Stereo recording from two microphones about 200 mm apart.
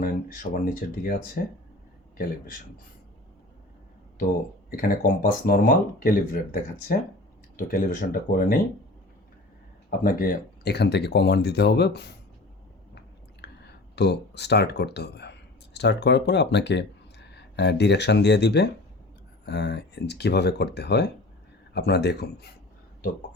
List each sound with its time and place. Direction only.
0.0 s speech: 45° left (ahead or behind)
4.8 s speech: 45° left (ahead or behind)
10.0 s speech: 45° left (ahead or behind)
13.4 s a sound: 55° left (ahead or behind)
13.9 s speech: 55° left (ahead or behind)